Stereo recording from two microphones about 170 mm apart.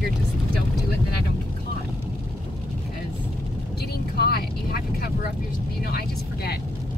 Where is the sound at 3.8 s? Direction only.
65° left (ahead or behind).